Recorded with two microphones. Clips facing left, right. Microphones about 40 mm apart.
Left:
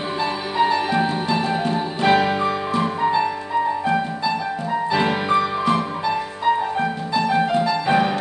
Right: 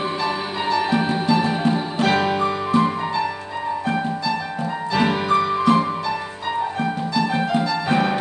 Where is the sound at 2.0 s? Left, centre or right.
Centre.